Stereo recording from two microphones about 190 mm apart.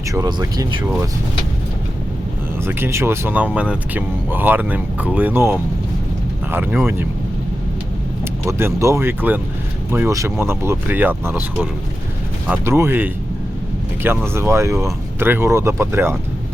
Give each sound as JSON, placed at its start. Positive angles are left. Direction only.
{"t": 0.1, "sound": "speech", "side_deg": -20}
{"t": 2.6, "sound": "speech", "side_deg": -10}
{"t": 8.2, "sound": "speech", "side_deg": -15}
{"t": 14.3, "sound": "speech", "side_deg": -15}